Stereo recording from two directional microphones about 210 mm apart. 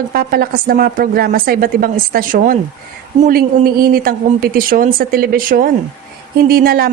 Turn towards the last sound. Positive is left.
turn(degrees=-45)  # may be behind; listen again after turning